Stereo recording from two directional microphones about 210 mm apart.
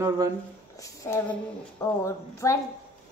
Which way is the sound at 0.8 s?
15° left (ahead or behind).